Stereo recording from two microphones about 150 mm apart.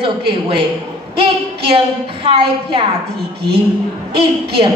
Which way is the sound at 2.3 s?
40° right (ahead or behind).